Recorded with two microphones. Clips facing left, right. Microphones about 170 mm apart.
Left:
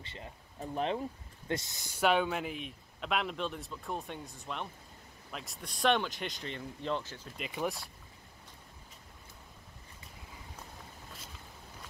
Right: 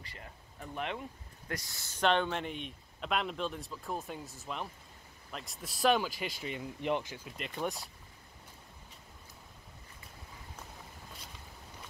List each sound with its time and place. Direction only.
0.0 s speech: 25° left (ahead or behind)
1.5 s speech: 20° left (ahead or behind); by 7.3 s 10° right (ahead or behind)
7.3 s speech: centre (ahead or behind)